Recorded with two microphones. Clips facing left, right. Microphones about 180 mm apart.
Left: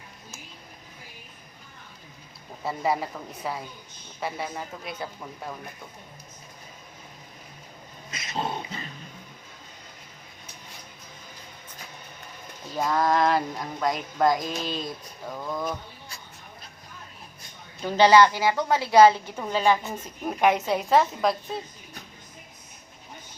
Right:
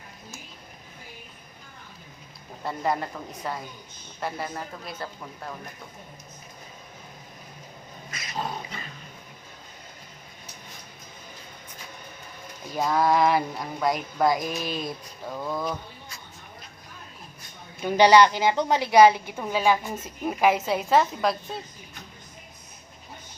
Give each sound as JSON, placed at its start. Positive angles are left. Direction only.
{"t": 2.6, "sound": "speech", "side_deg": 5}
{"t": 8.1, "sound": "dog", "side_deg": 25}
{"t": 12.7, "sound": "a woman's voice", "side_deg": -5}
{"t": 17.7, "sound": "a woman's voice", "side_deg": -15}